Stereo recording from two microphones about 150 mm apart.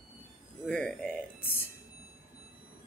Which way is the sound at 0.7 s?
5° left (ahead or behind).